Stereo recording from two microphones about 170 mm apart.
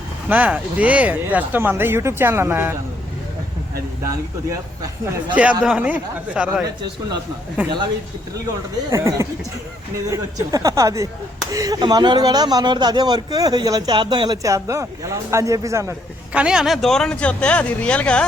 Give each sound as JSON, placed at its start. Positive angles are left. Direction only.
{"t": 0.3, "sound": "speech", "side_deg": -10}
{"t": 5.3, "sound": "speech", "side_deg": -10}
{"t": 7.6, "sound": "speech", "side_deg": -10}
{"t": 8.9, "sound": "speech", "side_deg": -20}
{"t": 16.3, "sound": "speech", "side_deg": -5}